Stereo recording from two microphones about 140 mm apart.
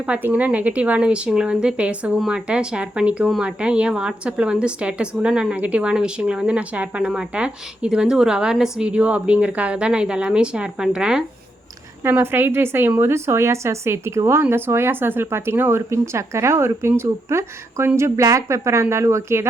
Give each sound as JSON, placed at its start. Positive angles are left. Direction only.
{"t": 0.0, "sound": "speech", "side_deg": -10}
{"t": 12.0, "sound": "a woman's voice", "side_deg": -15}